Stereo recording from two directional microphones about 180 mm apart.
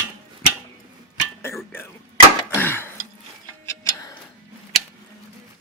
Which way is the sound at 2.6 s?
10° left (ahead or behind).